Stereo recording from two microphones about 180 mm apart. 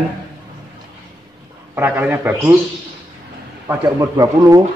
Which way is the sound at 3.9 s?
20° right (ahead or behind).